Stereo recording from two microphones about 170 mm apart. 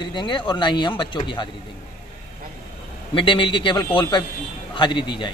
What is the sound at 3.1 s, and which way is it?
A man's voice, 30° left (ahead or behind).